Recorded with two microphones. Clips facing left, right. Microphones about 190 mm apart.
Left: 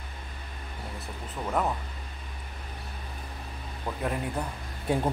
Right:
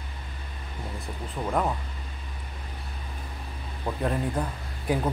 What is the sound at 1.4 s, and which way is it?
Speech, 10° right (ahead or behind).